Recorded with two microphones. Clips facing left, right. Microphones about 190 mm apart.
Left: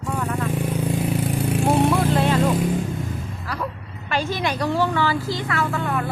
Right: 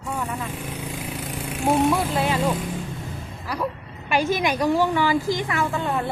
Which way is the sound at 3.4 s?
15° right (ahead or behind).